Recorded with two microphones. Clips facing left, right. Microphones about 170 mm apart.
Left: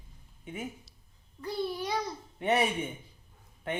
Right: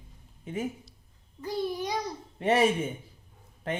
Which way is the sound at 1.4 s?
20° right (ahead or behind).